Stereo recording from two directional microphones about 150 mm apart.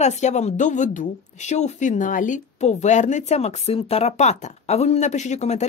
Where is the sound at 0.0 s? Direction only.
50° left (ahead or behind).